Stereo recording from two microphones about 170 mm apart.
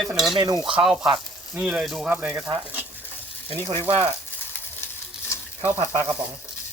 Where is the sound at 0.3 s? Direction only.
25° right (ahead or behind).